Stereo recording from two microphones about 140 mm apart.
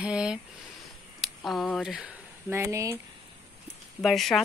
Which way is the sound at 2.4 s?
20° right (ahead or behind).